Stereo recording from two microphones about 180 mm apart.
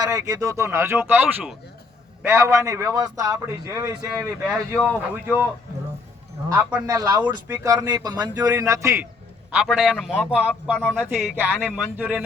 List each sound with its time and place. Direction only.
0.0 s a man's voice: 20° right (ahead or behind)
6.5 s a man's voice: 10° right (ahead or behind)
9.5 s a man's voice: 5° right (ahead or behind)